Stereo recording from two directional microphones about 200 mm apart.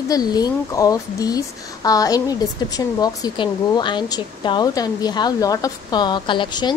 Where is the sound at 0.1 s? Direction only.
20° left (ahead or behind).